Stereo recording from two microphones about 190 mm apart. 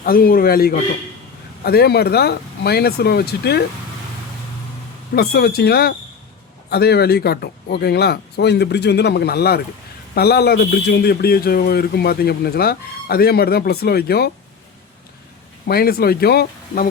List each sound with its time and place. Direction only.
0.0 s speech: 50° left (ahead or behind)
5.1 s speech: 55° left (ahead or behind)
15.6 s speech: 55° left (ahead or behind)